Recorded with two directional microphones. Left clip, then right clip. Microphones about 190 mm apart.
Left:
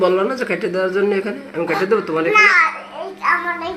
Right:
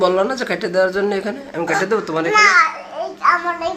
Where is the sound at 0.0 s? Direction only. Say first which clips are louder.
Even; centre (ahead or behind).